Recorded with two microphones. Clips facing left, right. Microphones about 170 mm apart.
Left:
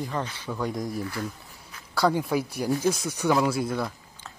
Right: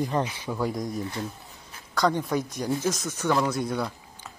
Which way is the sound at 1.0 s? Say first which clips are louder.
Even; 20° right (ahead or behind).